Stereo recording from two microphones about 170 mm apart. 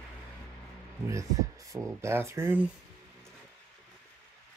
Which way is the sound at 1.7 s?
15° right (ahead or behind).